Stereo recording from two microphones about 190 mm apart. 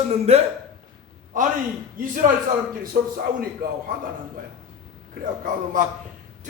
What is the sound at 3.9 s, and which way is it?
Speech, 50° right (ahead or behind).